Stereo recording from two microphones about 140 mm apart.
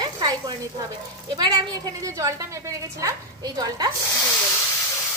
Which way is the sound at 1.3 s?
30° right (ahead or behind).